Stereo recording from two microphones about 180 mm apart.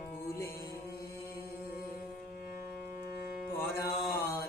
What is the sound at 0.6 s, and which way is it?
Mantra, 55° left (ahead or behind).